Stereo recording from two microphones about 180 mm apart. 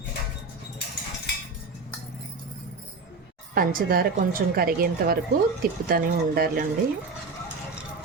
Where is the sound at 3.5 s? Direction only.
55° right (ahead or behind).